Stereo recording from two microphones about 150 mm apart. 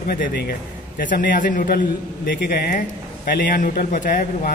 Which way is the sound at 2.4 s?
90° left.